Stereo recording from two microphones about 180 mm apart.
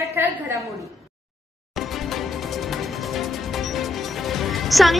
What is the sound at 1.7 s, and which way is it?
Music, centre (ahead or behind).